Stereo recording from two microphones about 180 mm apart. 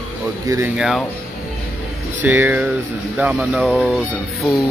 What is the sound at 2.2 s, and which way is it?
Speech, 10° right (ahead or behind).